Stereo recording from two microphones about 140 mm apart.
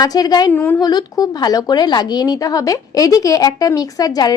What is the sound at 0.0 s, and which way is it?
Speech, 30° left (ahead or behind).